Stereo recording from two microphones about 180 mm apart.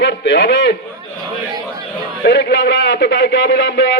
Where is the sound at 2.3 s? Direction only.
65° left (ahead or behind).